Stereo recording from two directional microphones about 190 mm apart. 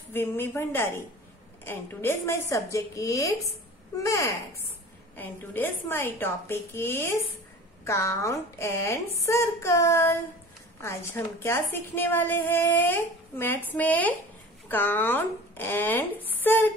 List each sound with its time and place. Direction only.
0.1 s a woman's voice: 10° left (ahead or behind)